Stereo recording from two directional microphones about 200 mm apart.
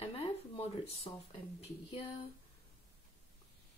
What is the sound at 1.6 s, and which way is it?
Speech, 25° left (ahead or behind).